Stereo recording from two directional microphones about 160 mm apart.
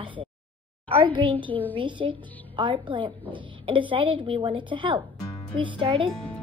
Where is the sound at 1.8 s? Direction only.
30° right (ahead or behind).